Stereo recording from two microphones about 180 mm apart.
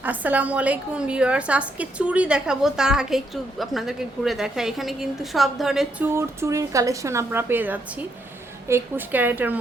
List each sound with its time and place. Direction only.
0.0 s a woman's voice: 10° right (ahead or behind)
6.1 s a woman's voice: 15° right (ahead or behind)